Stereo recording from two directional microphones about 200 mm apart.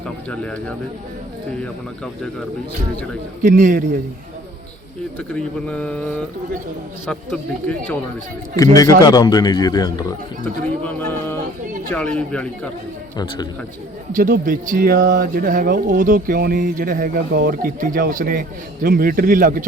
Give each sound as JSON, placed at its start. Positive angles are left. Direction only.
{"t": 0.3, "sound": "a man's voice", "side_deg": 5}
{"t": 3.4, "sound": "a man's voice", "side_deg": -40}
{"t": 5.3, "sound": "speech", "side_deg": 5}
{"t": 8.5, "sound": "a man's voice", "side_deg": 15}
{"t": 10.4, "sound": "a man's voice", "side_deg": 10}
{"t": 14.1, "sound": "speech", "side_deg": -45}